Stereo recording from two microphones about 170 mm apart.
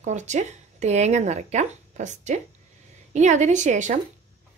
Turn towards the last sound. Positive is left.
turn(degrees=-45)  # may be behind; listen again after turning